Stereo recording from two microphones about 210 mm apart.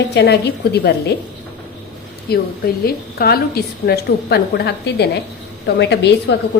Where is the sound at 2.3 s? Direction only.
50° left (ahead or behind).